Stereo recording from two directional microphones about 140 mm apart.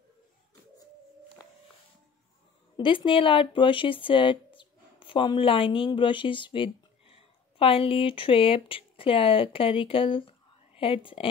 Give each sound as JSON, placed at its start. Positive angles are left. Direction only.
{"t": 2.8, "sound": "speech", "side_deg": 35}